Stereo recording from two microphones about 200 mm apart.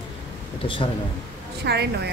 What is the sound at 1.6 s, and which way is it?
Speech, 55° right (ahead or behind).